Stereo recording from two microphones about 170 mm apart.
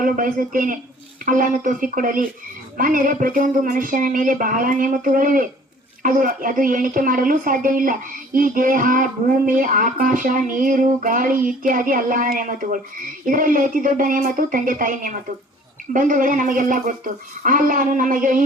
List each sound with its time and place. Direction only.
0.0 s speech: 55° right (ahead or behind)